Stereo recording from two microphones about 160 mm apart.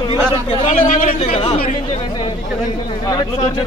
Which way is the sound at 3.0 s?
25° left (ahead or behind).